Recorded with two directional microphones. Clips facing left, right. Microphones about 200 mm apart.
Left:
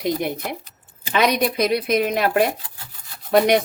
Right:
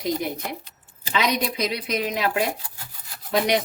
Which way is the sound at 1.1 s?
55° left (ahead or behind).